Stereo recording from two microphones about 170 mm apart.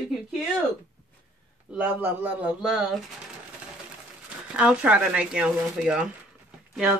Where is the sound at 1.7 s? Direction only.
10° right (ahead or behind).